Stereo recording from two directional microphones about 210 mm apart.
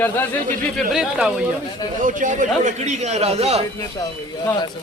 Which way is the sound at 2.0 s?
40° right (ahead or behind).